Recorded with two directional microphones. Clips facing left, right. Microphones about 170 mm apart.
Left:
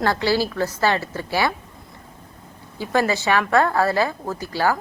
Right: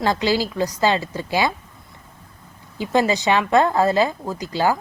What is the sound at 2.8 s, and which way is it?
Speech, 20° right (ahead or behind).